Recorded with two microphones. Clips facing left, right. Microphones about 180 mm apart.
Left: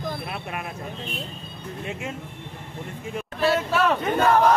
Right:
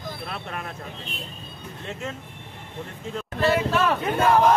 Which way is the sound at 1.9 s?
10° left (ahead or behind).